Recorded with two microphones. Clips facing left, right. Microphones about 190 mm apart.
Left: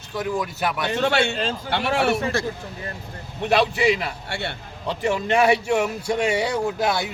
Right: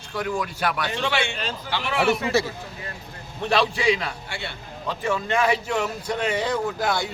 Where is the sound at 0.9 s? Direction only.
45° left (ahead or behind).